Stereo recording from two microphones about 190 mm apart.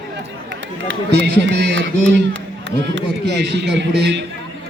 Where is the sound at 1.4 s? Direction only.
70° right (ahead or behind).